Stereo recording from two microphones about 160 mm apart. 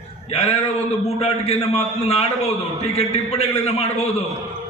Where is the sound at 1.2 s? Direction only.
40° left (ahead or behind).